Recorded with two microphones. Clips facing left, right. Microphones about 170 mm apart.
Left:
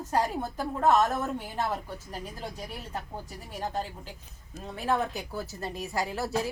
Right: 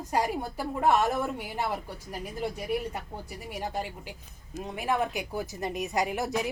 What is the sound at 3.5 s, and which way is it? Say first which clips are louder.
A woman's voice: left 1 dB; 10° right (ahead or behind).